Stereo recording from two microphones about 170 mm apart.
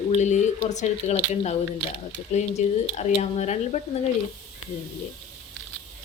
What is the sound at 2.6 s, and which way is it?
Speech, 45° left (ahead or behind).